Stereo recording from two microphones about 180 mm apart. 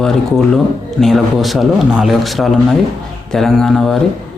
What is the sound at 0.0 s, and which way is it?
Speech, centre (ahead or behind).